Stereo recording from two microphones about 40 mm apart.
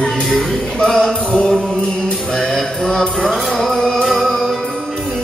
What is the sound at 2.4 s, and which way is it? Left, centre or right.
Mantra, centre.